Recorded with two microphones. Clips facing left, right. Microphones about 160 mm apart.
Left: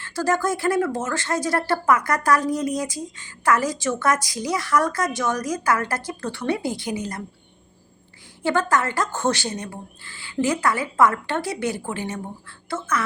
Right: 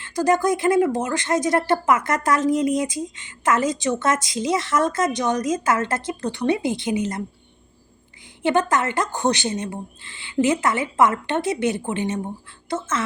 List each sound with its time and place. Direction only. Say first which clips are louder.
0.0 s speech: right 3 dB; 20° right (ahead or behind)
8.4 s speech: right 2 dB; 20° right (ahead or behind)